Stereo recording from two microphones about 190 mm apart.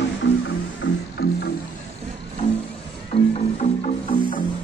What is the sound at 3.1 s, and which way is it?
Music, 30° left (ahead or behind).